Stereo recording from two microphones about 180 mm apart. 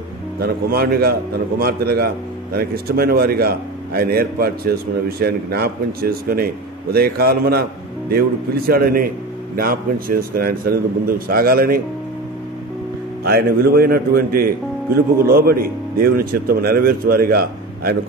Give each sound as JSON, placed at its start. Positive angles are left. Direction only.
{"t": 0.4, "sound": "speech", "side_deg": -60}
{"t": 13.2, "sound": "speech", "side_deg": -60}